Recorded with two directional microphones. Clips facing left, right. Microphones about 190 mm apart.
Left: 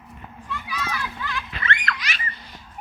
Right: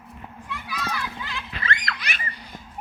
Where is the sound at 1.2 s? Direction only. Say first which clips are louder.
Left 3 dB; 25° right (ahead or behind).